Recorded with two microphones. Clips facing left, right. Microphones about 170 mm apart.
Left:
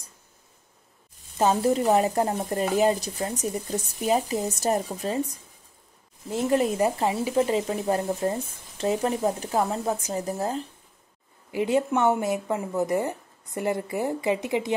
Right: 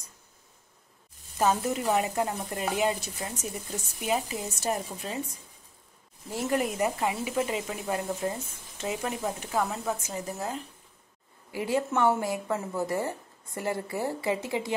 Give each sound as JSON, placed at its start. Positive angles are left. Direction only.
{"t": 1.4, "sound": "speech", "side_deg": 30}
{"t": 6.3, "sound": "speech", "side_deg": 25}
{"t": 11.5, "sound": "speech", "side_deg": 20}